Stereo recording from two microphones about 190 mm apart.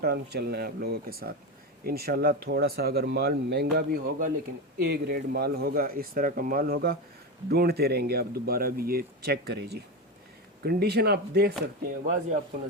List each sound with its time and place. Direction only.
0.0 s speech: 55° right (ahead or behind)